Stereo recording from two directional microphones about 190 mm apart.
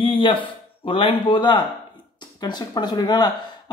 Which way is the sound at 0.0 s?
30° left (ahead or behind).